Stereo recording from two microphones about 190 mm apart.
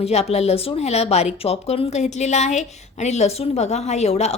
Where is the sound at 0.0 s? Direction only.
35° left (ahead or behind).